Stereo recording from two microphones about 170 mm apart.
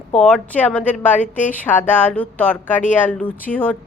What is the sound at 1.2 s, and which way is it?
Speech, 45° left (ahead or behind).